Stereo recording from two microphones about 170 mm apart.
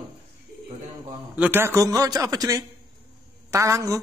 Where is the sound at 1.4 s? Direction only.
10° right (ahead or behind).